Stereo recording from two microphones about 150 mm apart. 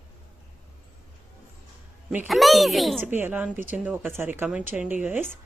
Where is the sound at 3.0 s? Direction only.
15° right (ahead or behind).